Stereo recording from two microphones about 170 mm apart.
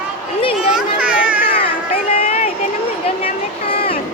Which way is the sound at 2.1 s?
35° left (ahead or behind).